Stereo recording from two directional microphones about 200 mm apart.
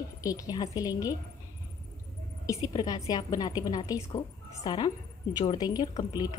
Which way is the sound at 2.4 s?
15° left (ahead or behind).